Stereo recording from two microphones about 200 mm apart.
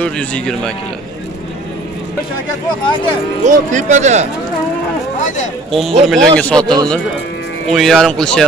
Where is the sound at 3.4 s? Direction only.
35° right (ahead or behind).